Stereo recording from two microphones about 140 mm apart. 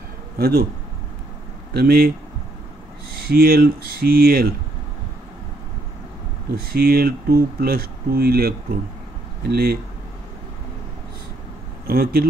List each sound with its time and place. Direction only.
0.4 s speech: 90° right
1.9 s speech: 90° right
3.3 s speech: 90° right
6.5 s speech: 90° right
11.9 s speech: 90° right